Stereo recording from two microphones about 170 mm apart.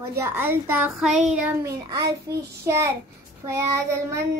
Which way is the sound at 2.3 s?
25° right (ahead or behind).